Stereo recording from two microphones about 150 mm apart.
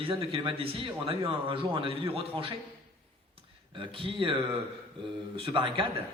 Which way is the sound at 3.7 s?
35° right (ahead or behind).